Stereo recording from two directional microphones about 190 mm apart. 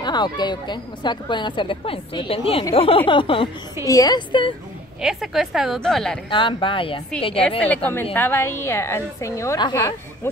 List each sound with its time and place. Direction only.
0.0 s speech: 20° left (ahead or behind)
5.0 s a woman's voice: centre (ahead or behind)
6.3 s speech: 25° left (ahead or behind)
7.4 s a woman's voice: 10° left (ahead or behind)